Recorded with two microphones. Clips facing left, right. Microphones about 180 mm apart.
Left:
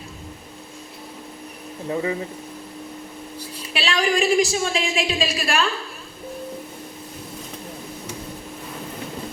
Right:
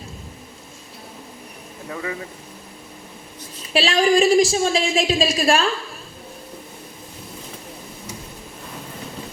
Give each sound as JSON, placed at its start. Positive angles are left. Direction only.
{"t": 1.9, "sound": "speech", "side_deg": 25}
{"t": 3.7, "sound": "a woman's voice", "side_deg": -35}